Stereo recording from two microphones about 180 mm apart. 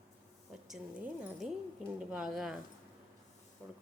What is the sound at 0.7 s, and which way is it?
A woman's voice, 5° right (ahead or behind).